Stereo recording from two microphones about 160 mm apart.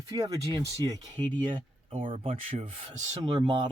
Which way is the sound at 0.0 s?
25° right (ahead or behind).